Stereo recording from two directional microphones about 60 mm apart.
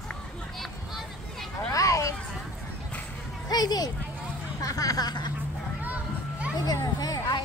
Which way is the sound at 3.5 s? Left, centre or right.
Left.